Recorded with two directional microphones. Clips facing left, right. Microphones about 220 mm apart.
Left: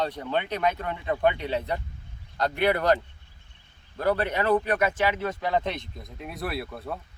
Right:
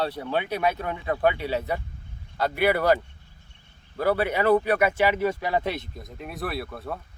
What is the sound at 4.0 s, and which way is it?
Speech, 10° right (ahead or behind).